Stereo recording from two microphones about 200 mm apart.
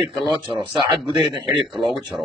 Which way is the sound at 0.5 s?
25° right (ahead or behind).